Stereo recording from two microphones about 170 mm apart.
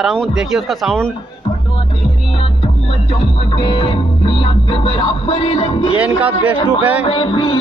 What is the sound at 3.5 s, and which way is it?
Music, 30° left (ahead or behind).